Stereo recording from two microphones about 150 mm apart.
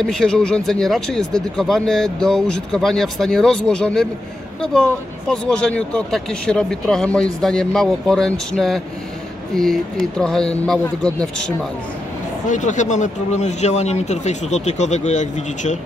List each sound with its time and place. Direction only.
0.0 s a man's voice: 5° left (ahead or behind)
12.4 s speech: 55° left (ahead or behind)